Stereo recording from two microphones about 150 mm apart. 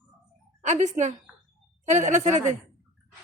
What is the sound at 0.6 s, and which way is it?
A woman's voice, 55° right (ahead or behind).